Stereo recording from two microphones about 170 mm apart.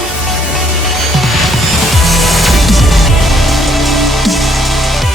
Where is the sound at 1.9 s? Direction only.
Centre (ahead or behind).